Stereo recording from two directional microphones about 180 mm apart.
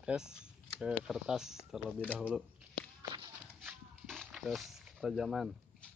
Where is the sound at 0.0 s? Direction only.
5° right (ahead or behind).